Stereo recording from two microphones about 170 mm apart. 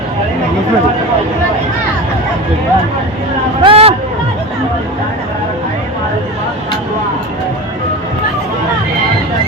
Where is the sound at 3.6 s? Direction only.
35° right (ahead or behind).